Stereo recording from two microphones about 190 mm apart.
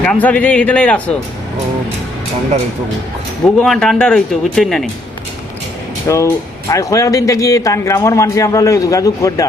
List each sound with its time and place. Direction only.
0.0 s speech: 5° left (ahead or behind)
3.6 s speech: 5° left (ahead or behind)
6.1 s speech: 15° left (ahead or behind)